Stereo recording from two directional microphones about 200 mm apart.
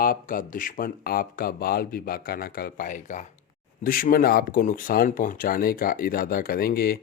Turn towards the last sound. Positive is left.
turn(degrees=50)  # may be behind; listen again after turning